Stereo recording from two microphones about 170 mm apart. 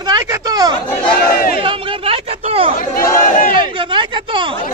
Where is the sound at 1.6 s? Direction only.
35° right (ahead or behind).